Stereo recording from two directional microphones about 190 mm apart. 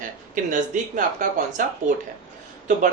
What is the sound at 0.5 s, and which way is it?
Speech, 45° right (ahead or behind).